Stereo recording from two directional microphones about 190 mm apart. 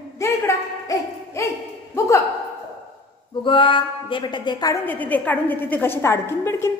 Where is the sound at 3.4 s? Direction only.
25° left (ahead or behind).